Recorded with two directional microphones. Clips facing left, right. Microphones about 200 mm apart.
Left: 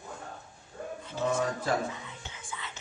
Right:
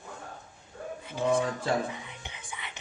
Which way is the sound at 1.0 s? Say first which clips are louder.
Right 4 dB; 15° right (ahead or behind).